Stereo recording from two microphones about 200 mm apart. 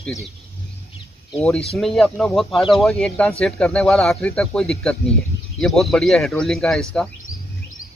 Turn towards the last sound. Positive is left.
turn(degrees=5)  # may be behind; listen again after turning